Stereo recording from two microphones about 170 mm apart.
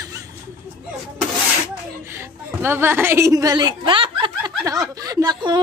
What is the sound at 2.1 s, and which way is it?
Speech, 15° right (ahead or behind).